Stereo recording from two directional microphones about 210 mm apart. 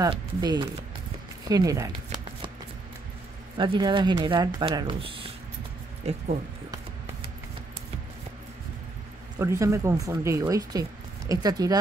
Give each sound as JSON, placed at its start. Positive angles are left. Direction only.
{"t": 0.0, "sound": "speech", "side_deg": -20}
{"t": 1.5, "sound": "a sound", "side_deg": -15}
{"t": 3.5, "sound": "speech", "side_deg": -25}
{"t": 9.4, "sound": "speech", "side_deg": -15}